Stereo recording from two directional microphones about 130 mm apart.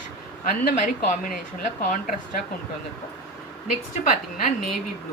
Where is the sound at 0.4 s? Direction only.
90° left.